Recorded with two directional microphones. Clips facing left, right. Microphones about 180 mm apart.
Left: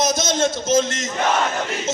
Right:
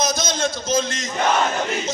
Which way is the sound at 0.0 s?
20° left (ahead or behind).